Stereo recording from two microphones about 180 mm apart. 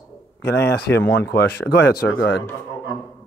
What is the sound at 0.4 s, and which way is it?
Speech, 70° left (ahead or behind).